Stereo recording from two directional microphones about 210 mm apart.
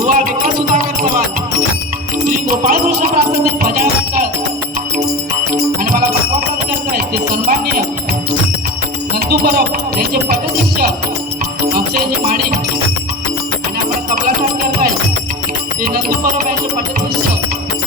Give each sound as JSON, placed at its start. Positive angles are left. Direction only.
{"t": 0.0, "sound": "music", "side_deg": -40}
{"t": 2.2, "sound": "music", "side_deg": -40}
{"t": 6.9, "sound": "music", "side_deg": -45}
{"t": 9.1, "sound": "music", "side_deg": -50}
{"t": 11.9, "sound": "music", "side_deg": -45}
{"t": 15.8, "sound": "music", "side_deg": -40}